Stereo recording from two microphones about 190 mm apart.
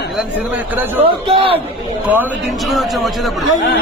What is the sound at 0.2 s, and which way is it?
Speech, 10° right (ahead or behind).